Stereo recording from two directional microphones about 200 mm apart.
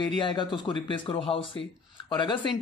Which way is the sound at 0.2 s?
20° left (ahead or behind).